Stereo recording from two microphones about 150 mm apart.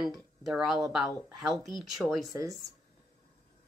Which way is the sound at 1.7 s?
Centre (ahead or behind).